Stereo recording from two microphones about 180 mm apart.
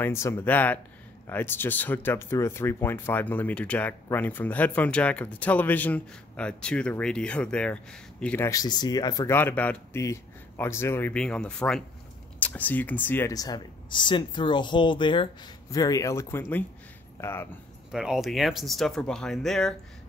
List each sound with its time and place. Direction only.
0.0 s speech: 15° left (ahead or behind)
17.9 s speech: centre (ahead or behind)